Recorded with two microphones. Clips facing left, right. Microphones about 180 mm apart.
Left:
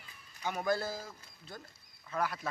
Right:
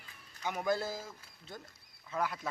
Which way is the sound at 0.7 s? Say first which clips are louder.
Even; 20° right (ahead or behind).